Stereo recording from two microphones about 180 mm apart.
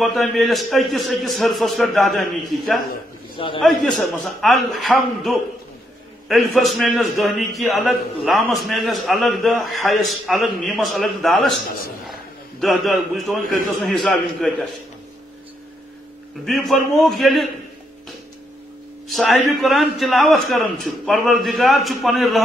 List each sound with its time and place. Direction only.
0.0 s a man's voice: centre (ahead or behind)
3.3 s a man's voice: 30° left (ahead or behind)
3.6 s a man's voice: centre (ahead or behind)
16.4 s a man's voice: centre (ahead or behind)
19.0 s a man's voice: centre (ahead or behind)